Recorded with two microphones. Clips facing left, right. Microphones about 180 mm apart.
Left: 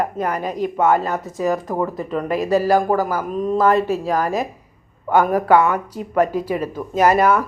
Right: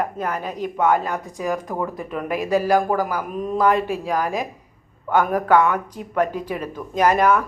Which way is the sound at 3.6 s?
40° left (ahead or behind).